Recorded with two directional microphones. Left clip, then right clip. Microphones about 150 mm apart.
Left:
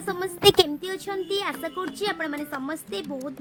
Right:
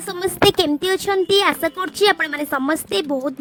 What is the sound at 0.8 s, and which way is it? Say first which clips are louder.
A woman's voice: right 12 dB; 80° right.